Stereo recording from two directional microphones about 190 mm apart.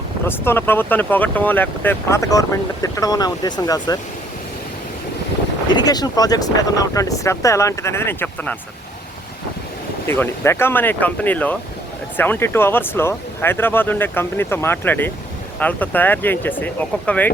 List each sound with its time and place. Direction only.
0.3 s speech: 10° left (ahead or behind)
5.7 s speech: 20° left (ahead or behind)
10.1 s speech: 10° left (ahead or behind)